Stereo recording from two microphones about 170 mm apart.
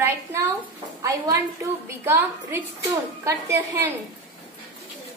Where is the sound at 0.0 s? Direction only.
15° right (ahead or behind).